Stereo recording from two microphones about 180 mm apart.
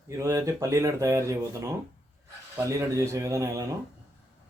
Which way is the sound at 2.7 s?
15° right (ahead or behind).